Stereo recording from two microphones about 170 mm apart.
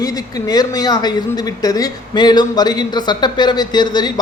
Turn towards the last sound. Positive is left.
turn(degrees=25)  # may be behind; listen again after turning